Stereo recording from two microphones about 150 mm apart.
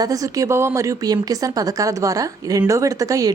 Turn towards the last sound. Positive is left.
turn(degrees=-20)  # may be behind; listen again after turning